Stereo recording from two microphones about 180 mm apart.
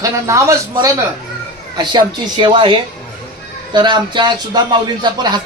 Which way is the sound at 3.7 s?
25° right (ahead or behind).